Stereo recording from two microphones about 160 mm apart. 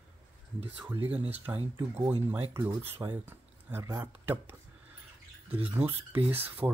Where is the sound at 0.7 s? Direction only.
10° right (ahead or behind).